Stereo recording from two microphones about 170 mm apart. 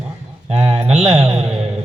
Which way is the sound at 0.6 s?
35° right (ahead or behind).